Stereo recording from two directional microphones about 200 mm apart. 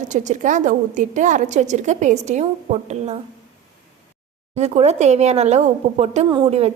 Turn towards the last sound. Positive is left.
turn(degrees=-25)  # may be behind; listen again after turning